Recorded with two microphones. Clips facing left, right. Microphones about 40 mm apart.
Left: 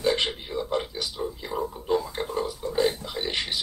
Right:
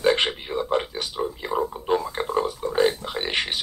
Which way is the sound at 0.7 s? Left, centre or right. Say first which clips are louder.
Right 4 dB; right.